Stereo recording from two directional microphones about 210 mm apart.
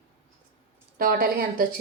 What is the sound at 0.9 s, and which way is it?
Speech, 45° right (ahead or behind).